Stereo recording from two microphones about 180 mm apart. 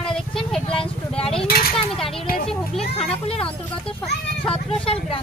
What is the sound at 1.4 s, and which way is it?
Speech, 55° left (ahead or behind).